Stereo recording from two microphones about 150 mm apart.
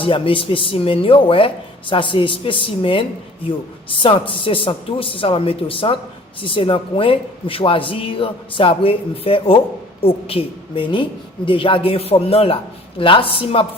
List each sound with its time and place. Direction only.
0.0 s a man's voice: 35° left (ahead or behind)